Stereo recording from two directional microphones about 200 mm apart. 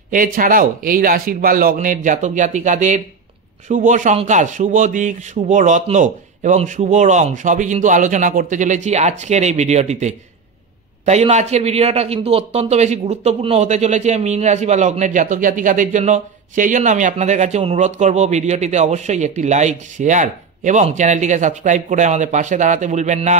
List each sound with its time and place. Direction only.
0.1 s a man's voice: 45° right (ahead or behind)